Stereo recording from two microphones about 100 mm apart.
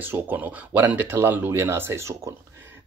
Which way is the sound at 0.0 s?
20° right (ahead or behind).